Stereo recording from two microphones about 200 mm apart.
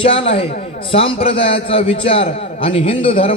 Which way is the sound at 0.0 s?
30° left (ahead or behind).